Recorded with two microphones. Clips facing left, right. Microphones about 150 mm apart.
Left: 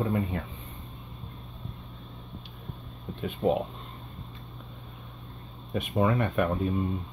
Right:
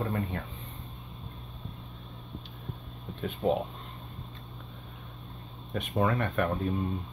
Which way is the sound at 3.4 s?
5° left (ahead or behind).